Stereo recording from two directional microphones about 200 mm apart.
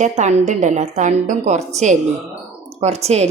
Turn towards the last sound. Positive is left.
turn(degrees=-35)  # may be behind; listen again after turning